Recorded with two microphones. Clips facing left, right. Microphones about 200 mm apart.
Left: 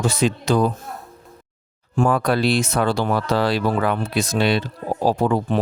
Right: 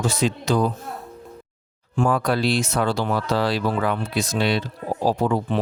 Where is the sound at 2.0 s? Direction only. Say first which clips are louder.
Left 2 dB; 60° left (ahead or behind).